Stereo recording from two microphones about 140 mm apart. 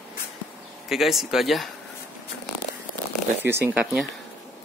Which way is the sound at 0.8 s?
Centre (ahead or behind).